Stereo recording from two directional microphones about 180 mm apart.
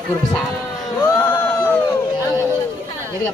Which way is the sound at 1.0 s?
10° left (ahead or behind).